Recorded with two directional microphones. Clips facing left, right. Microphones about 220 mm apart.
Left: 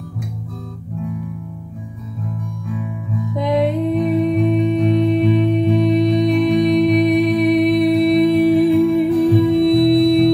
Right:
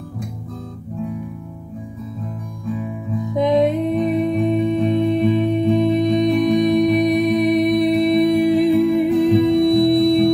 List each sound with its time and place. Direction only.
3.3 s music: 20° right (ahead or behind)